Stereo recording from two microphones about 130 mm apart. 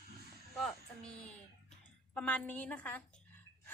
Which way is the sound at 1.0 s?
10° left (ahead or behind).